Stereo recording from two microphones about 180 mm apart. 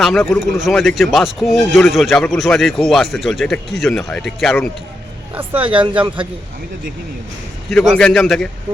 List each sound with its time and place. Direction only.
0.0 s speech: centre (ahead or behind)
5.5 s speech: 30° right (ahead or behind)
7.7 s speech: centre (ahead or behind)